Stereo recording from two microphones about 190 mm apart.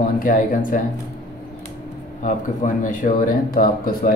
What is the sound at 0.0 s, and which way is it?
Speech, 45° left (ahead or behind).